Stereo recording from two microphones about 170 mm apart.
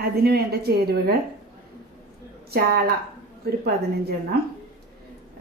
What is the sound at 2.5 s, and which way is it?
Speech, 65° right (ahead or behind).